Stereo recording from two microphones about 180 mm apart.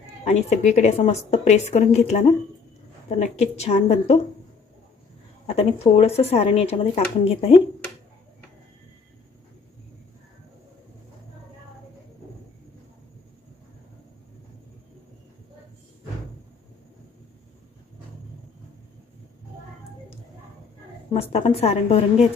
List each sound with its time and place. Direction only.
0.3 s speech: 40° left (ahead or behind)
5.5 s speech: 35° left (ahead or behind)
21.1 s speech: 35° left (ahead or behind)